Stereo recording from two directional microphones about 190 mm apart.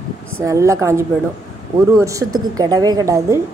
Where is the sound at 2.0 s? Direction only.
20° right (ahead or behind).